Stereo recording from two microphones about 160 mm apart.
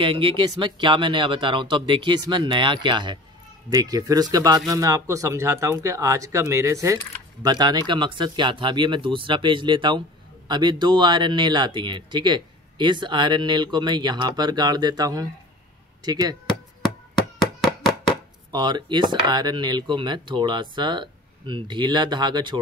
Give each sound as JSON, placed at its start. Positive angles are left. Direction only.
{"t": 0.0, "sound": "speech", "side_deg": -35}
{"t": 17.4, "sound": "a sound", "side_deg": 25}
{"t": 18.5, "sound": "speech", "side_deg": -30}